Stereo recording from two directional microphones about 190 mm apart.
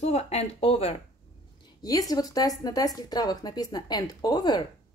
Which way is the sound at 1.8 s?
20° left (ahead or behind).